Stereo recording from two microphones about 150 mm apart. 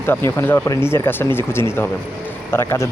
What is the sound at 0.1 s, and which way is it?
Speech, 15° left (ahead or behind).